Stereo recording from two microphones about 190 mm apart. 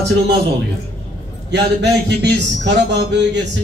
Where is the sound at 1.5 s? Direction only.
65° right (ahead or behind).